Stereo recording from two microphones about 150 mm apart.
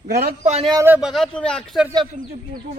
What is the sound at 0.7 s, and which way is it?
Speech, 15° right (ahead or behind).